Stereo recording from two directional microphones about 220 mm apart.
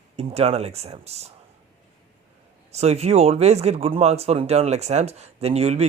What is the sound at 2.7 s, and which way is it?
Speech, 30° right (ahead or behind).